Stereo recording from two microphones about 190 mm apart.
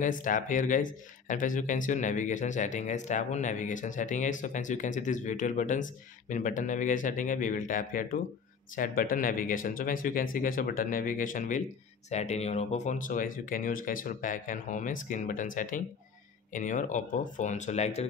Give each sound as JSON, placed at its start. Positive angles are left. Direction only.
{"t": 0.0, "sound": "speech", "side_deg": 45}